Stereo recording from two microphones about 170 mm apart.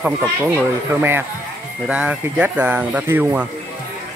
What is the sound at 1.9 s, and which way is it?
Speech, 5° right (ahead or behind).